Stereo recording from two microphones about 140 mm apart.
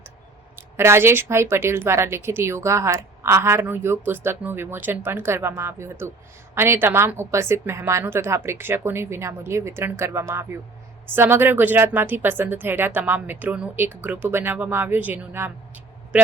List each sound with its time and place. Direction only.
0.5 s speech: 15° right (ahead or behind)